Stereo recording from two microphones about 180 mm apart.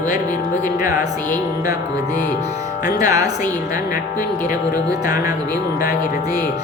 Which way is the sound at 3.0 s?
20° right (ahead or behind).